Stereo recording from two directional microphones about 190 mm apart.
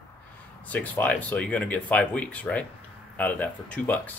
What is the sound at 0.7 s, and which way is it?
Speech, 10° left (ahead or behind).